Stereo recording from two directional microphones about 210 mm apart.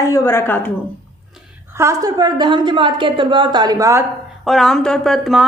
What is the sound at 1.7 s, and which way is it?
A woman's voice, 15° right (ahead or behind).